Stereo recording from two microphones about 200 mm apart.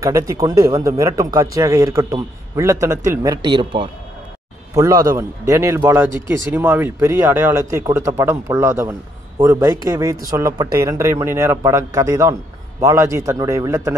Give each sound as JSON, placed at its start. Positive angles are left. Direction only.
{"t": 0.0, "sound": "speech", "side_deg": -15}